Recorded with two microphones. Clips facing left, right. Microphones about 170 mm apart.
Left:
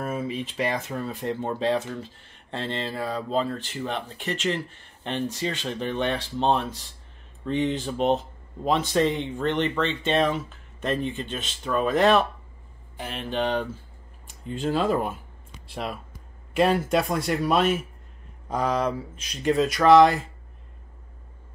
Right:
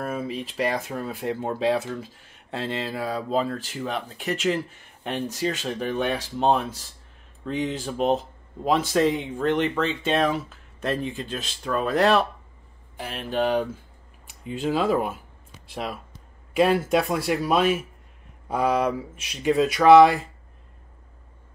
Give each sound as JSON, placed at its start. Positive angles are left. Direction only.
{"t": 0.0, "sound": "speech", "side_deg": 0}